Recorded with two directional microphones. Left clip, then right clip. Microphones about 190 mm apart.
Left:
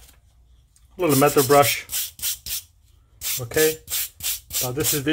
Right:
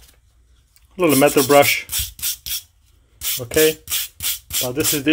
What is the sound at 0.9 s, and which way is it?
Speech, 25° right (ahead or behind).